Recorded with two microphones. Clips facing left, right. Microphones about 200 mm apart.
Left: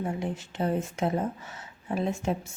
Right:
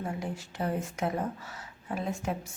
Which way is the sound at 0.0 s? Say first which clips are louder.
Left 4 dB; 20° left (ahead or behind).